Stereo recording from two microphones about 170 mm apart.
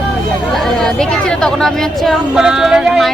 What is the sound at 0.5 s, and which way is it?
Speech, centre (ahead or behind).